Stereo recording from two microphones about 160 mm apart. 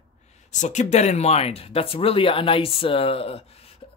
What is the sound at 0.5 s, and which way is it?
Speech, 45° left (ahead or behind).